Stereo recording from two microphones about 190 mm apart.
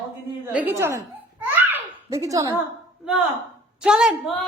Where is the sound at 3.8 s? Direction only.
5° right (ahead or behind).